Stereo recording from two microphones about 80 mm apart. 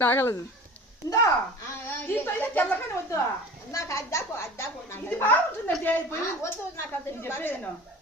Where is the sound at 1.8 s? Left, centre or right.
Left.